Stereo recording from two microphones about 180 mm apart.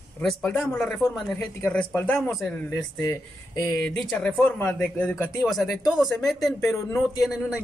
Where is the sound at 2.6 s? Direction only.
20° left (ahead or behind).